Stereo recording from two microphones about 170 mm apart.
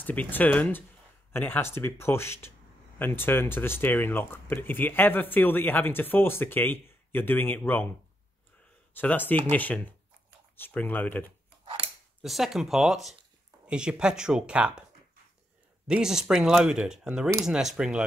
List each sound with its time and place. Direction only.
0.0 s speech: 10° left (ahead or behind)
8.9 s speech: 10° left (ahead or behind)
12.2 s speech: centre (ahead or behind)
15.9 s speech: 5° right (ahead or behind)